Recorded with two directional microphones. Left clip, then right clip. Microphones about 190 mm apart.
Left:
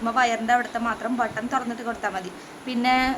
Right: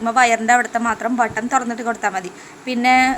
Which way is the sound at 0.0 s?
25° right (ahead or behind).